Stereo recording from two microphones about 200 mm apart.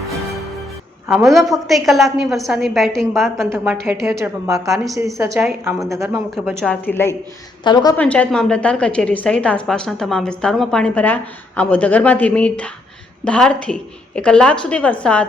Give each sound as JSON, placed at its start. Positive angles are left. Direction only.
{"t": 1.0, "sound": "a woman's voice", "side_deg": 0}
{"t": 6.6, "sound": "a woman's voice", "side_deg": 10}
{"t": 7.6, "sound": "a woman's voice", "side_deg": 20}
{"t": 7.9, "sound": "a woman's voice", "side_deg": 5}